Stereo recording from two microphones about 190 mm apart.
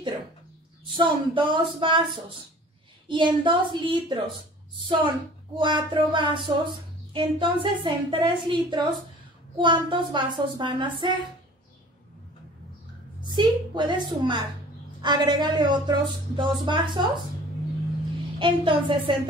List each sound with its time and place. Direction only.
0.9 s a woman's voice: 25° right (ahead or behind)
3.1 s a woman's voice: 25° right (ahead or behind)
13.3 s a woman's voice: 25° right (ahead or behind)
18.4 s a woman's voice: 25° right (ahead or behind)